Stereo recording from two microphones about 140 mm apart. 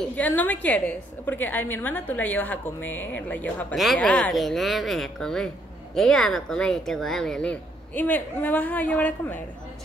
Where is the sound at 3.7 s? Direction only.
Centre (ahead or behind).